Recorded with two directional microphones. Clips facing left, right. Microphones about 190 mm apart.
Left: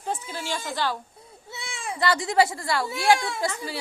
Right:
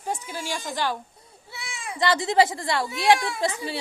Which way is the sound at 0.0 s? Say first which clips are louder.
Even; 10° right (ahead or behind).